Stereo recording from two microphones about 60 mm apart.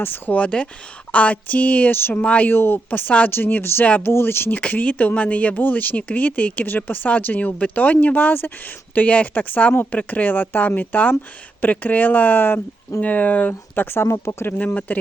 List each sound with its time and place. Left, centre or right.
0.0 s speech: left
2.0 s speech: left
2.2 s speech: left
2.5 s speech: left
4.5 s speech: left
13.7 s speech: left
14.9 s speech: left